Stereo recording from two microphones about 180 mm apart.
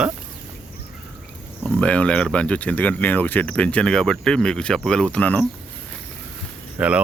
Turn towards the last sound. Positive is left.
turn(degrees=-5)  # may be behind; listen again after turning